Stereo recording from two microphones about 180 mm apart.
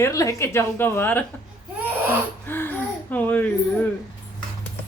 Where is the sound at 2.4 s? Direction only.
10° left (ahead or behind).